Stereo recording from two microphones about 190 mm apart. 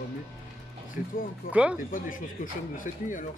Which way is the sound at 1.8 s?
45° left (ahead or behind).